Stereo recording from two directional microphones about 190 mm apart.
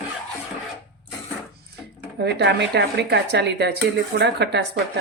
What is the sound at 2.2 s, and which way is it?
Speech, 60° right (ahead or behind).